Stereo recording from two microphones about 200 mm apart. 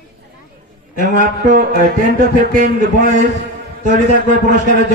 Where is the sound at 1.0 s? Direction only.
45° right (ahead or behind).